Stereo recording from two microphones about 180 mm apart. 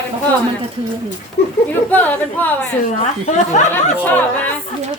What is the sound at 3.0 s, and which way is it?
Speech, 40° left (ahead or behind).